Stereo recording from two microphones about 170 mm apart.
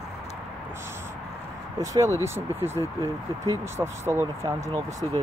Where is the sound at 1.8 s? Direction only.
20° right (ahead or behind).